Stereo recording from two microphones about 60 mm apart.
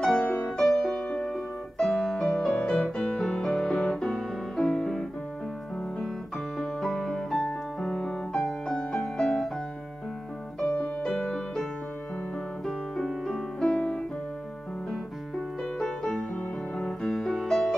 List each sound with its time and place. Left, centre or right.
0.0 s music: centre
11.0 s music: centre
12.6 s music: centre
15.6 s music: centre
17.0 s music: centre